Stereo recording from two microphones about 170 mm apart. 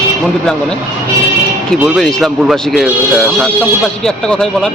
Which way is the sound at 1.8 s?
5° right (ahead or behind).